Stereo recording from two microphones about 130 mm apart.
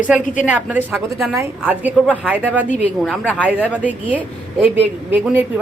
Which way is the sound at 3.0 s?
5° left (ahead or behind).